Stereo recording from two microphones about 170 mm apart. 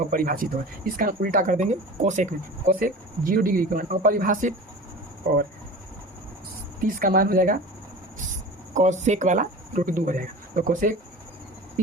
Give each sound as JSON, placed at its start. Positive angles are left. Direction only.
{"t": 0.1, "sound": "speech", "side_deg": -55}
{"t": 6.8, "sound": "speech", "side_deg": -55}
{"t": 8.7, "sound": "speech", "side_deg": -45}